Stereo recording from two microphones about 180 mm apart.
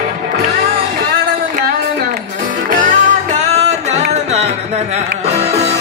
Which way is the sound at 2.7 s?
45° right (ahead or behind).